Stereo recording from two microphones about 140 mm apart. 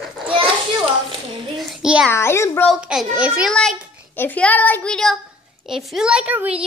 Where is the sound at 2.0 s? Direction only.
20° left (ahead or behind).